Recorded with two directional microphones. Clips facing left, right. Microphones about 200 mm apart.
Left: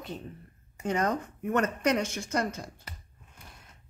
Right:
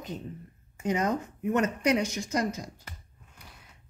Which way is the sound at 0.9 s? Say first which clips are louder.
Even; 10° right (ahead or behind).